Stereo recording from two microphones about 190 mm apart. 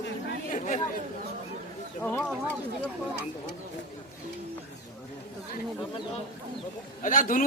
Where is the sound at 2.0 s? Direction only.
10° left (ahead or behind).